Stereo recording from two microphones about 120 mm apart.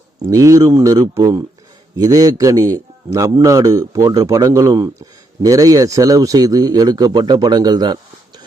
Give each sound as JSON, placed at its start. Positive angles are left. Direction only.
{"t": 0.3, "sound": "a man's voice", "side_deg": -25}